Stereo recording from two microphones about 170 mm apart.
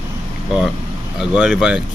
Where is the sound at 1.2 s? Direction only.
5° right (ahead or behind).